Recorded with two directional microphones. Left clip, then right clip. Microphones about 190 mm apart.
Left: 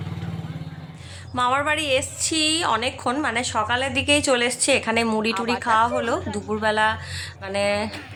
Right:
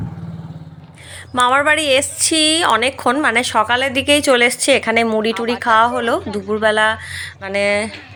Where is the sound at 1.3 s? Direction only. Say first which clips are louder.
Right 8 dB; 25° right (ahead or behind).